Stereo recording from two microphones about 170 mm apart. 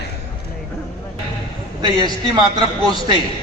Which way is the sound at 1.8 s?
25° right (ahead or behind).